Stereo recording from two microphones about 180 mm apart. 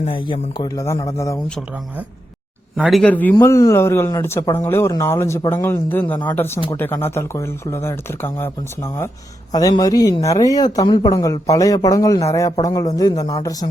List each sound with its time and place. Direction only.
0.0 s speech: 30° left (ahead or behind)
2.7 s speech: centre (ahead or behind); by 13.7 s 20° left (ahead or behind)